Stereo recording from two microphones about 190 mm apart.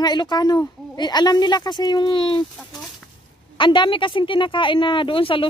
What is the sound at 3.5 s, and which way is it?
A woman's voice, 25° left (ahead or behind).